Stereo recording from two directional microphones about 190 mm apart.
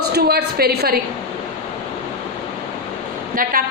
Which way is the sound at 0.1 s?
55° right (ahead or behind).